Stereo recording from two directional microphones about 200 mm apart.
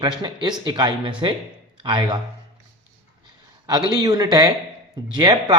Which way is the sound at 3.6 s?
20° right (ahead or behind).